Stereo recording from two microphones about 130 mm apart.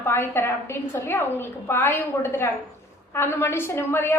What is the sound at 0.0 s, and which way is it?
A woman's voice, 20° left (ahead or behind).